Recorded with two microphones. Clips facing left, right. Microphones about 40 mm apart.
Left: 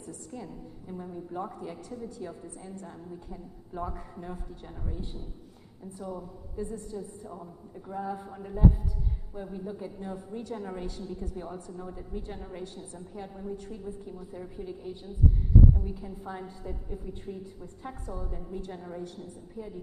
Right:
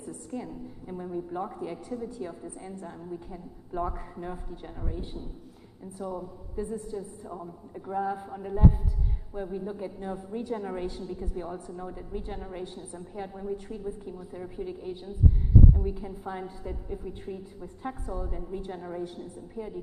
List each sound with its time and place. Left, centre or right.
0.0 s a woman's voice: centre